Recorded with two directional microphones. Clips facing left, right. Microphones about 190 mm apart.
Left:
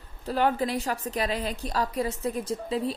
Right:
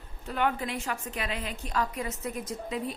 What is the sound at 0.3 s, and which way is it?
A woman's voice, 35° left (ahead or behind).